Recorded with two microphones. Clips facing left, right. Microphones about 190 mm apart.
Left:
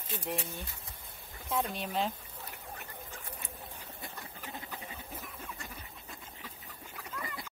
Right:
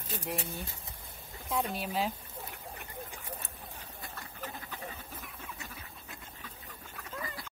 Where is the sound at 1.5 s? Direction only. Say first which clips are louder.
Even; centre (ahead or behind).